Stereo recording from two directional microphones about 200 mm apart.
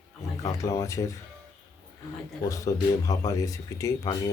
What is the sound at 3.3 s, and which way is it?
Speech, 15° left (ahead or behind).